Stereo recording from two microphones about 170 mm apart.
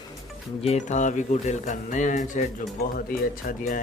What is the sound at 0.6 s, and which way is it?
Speech, 40° left (ahead or behind).